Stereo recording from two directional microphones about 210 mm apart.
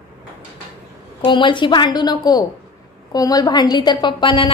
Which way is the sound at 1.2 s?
20° left (ahead or behind).